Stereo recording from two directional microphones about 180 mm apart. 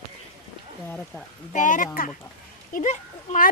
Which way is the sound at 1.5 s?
45° left (ahead or behind).